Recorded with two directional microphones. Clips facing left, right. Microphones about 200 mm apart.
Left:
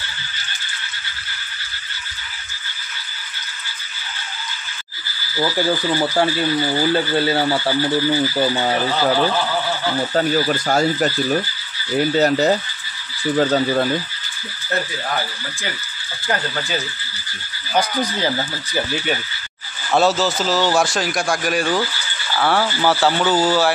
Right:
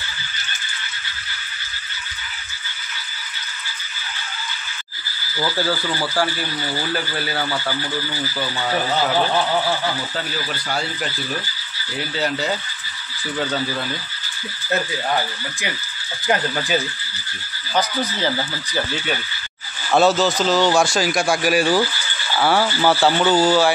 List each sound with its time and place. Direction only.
5.4 s speech: 15° left (ahead or behind); by 8.7 s 35° left (ahead or behind)
10.1 s speech: 45° left (ahead or behind)
19.9 s speech: centre (ahead or behind)